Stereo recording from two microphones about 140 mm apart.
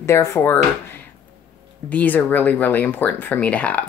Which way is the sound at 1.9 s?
10° left (ahead or behind).